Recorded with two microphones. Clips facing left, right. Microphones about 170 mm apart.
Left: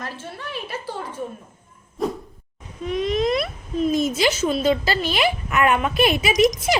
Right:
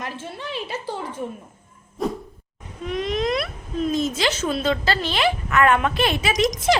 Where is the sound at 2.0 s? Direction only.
Centre (ahead or behind).